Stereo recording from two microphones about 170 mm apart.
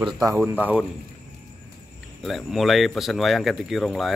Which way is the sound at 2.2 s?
Centre (ahead or behind).